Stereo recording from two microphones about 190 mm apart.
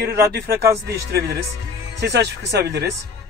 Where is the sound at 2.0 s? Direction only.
60° right (ahead or behind).